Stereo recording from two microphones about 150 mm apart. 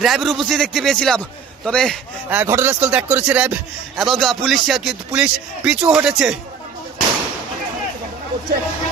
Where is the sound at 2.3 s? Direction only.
15° right (ahead or behind).